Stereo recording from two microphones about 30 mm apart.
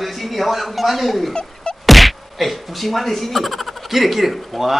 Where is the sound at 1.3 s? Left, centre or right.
Left.